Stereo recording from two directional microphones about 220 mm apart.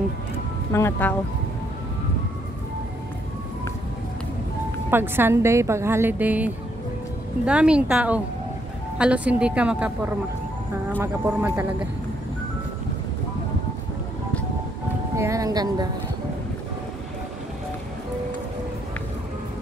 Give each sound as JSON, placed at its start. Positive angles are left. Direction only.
{"t": 0.7, "sound": "speech", "side_deg": 10}
{"t": 4.9, "sound": "a woman's voice", "side_deg": -10}
{"t": 15.1, "sound": "speech", "side_deg": -15}